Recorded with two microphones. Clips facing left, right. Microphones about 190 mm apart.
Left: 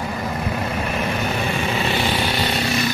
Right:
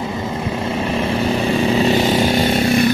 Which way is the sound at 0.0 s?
25° right (ahead or behind).